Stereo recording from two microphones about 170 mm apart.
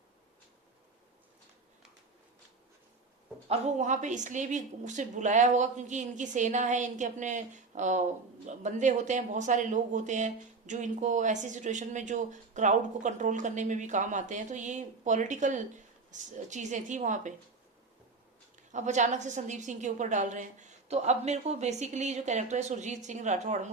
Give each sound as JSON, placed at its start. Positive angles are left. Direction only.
{"t": 3.5, "sound": "speech", "side_deg": -45}
{"t": 18.7, "sound": "speech", "side_deg": -45}